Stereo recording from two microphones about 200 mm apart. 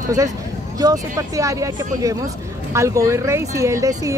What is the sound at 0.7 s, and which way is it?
Speech, 20° right (ahead or behind).